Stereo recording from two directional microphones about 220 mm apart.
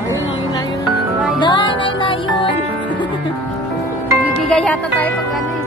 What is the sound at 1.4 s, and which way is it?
Music, 20° left (ahead or behind).